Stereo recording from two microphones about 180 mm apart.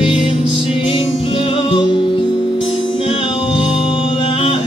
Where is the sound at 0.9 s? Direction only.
30° left (ahead or behind).